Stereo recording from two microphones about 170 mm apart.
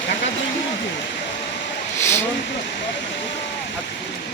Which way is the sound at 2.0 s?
15° left (ahead or behind).